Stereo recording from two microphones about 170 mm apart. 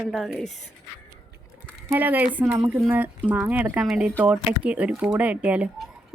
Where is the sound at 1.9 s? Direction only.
10° right (ahead or behind).